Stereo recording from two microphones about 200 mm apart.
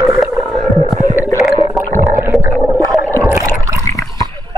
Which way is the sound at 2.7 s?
10° right (ahead or behind).